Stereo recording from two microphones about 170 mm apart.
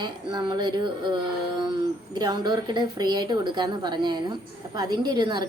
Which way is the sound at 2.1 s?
25° right (ahead or behind).